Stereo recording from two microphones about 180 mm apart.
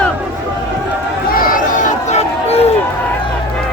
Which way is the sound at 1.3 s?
50° left (ahead or behind).